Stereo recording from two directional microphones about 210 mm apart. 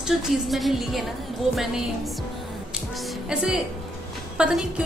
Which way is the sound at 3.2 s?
Centre (ahead or behind).